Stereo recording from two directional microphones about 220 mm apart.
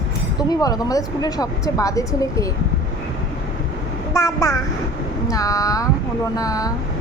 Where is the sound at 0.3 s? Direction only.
15° left (ahead or behind).